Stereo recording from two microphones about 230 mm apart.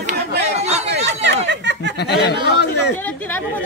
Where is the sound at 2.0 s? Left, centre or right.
Left.